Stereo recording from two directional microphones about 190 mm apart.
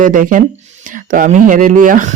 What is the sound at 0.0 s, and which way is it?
Speech, 45° right (ahead or behind).